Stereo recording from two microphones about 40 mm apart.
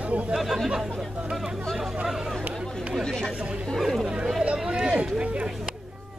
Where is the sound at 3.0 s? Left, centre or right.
Centre.